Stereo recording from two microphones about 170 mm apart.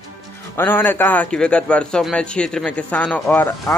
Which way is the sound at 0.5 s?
10° left (ahead or behind).